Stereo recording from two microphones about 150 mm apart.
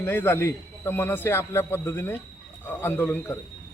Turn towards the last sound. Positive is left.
turn(degrees=15)  # may be behind; listen again after turning